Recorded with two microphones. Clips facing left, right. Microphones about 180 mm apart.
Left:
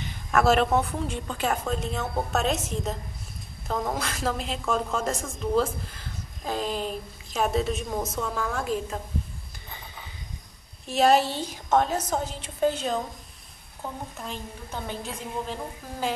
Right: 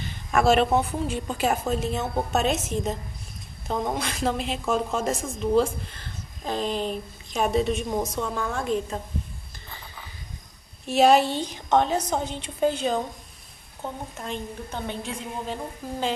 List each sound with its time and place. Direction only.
0.3 s a woman's voice: centre (ahead or behind)
3.6 s a woman's voice: 15° right (ahead or behind)
3.9 s a woman's voice: centre (ahead or behind)
6.4 s a woman's voice: 5° left (ahead or behind)
10.9 s a woman's voice: centre (ahead or behind)
14.1 s a woman's voice: 5° left (ahead or behind)